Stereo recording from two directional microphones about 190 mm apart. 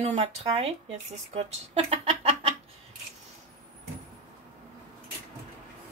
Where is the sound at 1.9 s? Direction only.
30° right (ahead or behind).